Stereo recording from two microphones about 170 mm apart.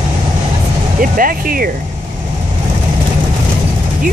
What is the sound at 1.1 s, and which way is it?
Speech, 55° right (ahead or behind).